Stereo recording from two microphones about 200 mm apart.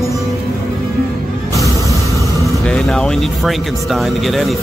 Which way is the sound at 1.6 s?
15° left (ahead or behind).